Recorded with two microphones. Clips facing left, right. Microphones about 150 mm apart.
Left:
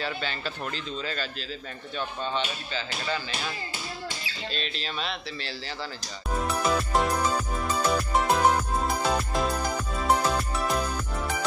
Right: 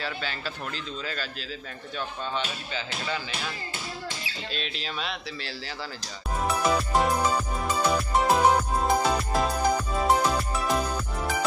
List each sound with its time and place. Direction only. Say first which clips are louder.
0.0 s speech: left 1 dB; 5° right (ahead or behind)
2.3 s speech: left 1 dB; 10° right (ahead or behind)
4.5 s speech: left 1 dB; 5° right (ahead or behind)
6.4 s music: right 2 dB; centre (ahead or behind)